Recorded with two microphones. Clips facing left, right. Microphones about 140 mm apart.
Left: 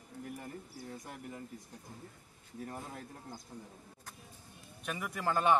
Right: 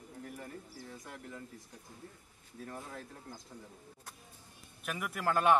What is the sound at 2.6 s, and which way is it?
Speech, 20° left (ahead or behind).